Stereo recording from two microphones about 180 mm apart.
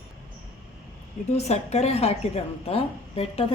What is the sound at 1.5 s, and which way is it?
A woman's voice, 35° left (ahead or behind).